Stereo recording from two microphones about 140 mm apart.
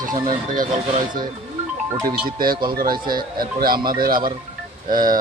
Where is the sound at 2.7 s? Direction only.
90° right.